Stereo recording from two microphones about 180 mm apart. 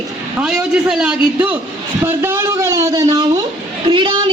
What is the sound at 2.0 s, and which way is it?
A man's voice, 15° right (ahead or behind).